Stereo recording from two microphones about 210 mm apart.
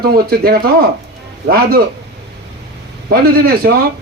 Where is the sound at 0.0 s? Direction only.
45° right (ahead or behind).